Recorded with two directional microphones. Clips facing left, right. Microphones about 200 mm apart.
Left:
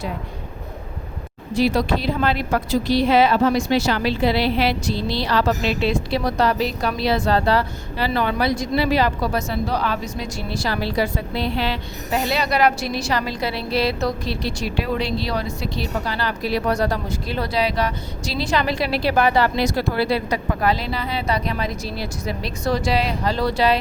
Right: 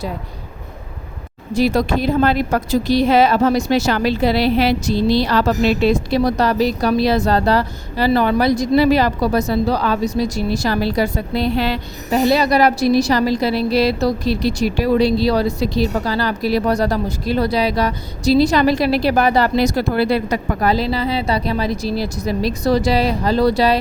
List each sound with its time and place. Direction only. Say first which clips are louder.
1.5 s a woman's voice: right 3 dB; 45° right (ahead or behind)
20.7 s a woman's voice: right 6 dB; 35° right (ahead or behind)